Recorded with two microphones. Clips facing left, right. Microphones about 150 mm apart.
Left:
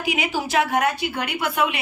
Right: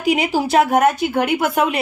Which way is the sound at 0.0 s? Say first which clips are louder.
Right 7 dB; 35° right (ahead or behind).